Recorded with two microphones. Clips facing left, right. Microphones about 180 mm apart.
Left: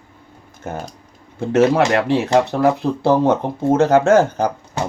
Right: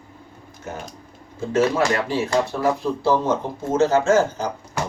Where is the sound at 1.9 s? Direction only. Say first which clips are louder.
Left 6 dB; 65° left (ahead or behind).